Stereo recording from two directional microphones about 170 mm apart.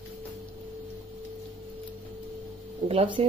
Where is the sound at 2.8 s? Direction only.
30° right (ahead or behind).